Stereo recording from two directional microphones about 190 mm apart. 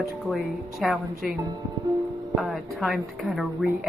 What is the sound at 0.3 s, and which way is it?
Speech, centre (ahead or behind).